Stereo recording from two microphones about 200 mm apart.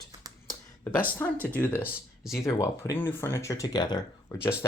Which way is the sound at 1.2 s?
10° left (ahead or behind).